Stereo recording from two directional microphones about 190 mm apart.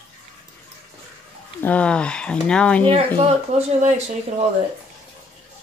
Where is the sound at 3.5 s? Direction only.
35° right (ahead or behind).